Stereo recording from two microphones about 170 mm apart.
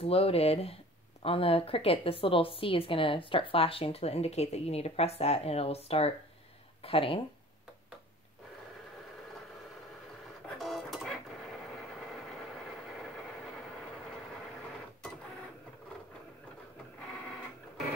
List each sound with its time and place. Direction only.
0.0 s a woman's voice: 35° left (ahead or behind)
10.6 s printer: centre (ahead or behind)